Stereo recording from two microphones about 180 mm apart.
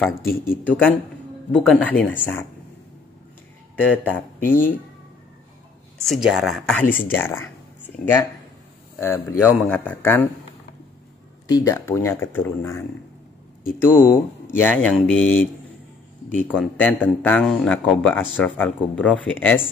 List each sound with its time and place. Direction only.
0.5 s speech: 10° left (ahead or behind)
3.7 s speech: 10° left (ahead or behind)
6.0 s speech: centre (ahead or behind)
11.4 s speech: 20° left (ahead or behind)